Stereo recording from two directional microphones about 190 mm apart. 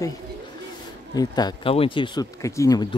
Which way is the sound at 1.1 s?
20° left (ahead or behind).